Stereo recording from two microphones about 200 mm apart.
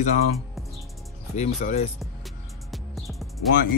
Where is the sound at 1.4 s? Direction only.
35° left (ahead or behind).